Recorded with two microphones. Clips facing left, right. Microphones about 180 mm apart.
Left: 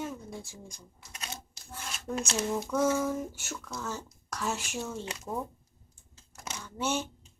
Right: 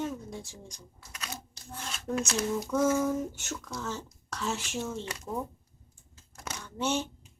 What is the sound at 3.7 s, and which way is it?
Speech, 10° left (ahead or behind).